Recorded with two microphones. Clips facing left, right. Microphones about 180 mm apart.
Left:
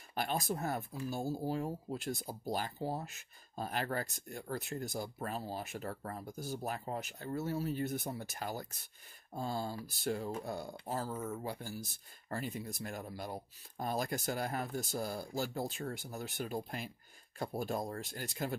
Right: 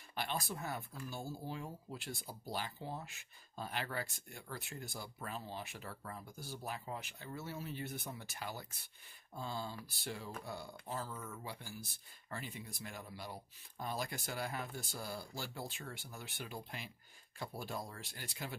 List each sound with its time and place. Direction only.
0.1 s speech: 45° left (ahead or behind)